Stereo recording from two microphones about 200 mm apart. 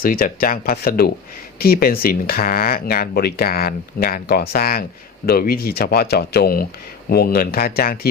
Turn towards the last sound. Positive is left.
turn(degrees=45)  # may be behind; listen again after turning